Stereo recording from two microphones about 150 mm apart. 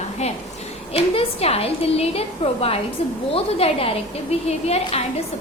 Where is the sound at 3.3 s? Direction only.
40° left (ahead or behind).